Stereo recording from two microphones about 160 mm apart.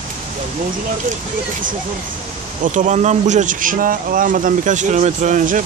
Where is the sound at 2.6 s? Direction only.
50° right (ahead or behind).